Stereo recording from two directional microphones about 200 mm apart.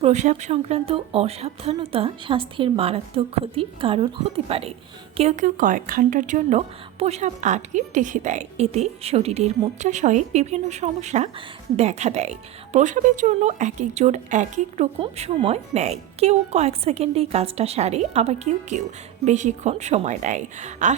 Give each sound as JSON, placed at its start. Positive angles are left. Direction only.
{"t": 0.0, "sound": "a woman's voice", "side_deg": -35}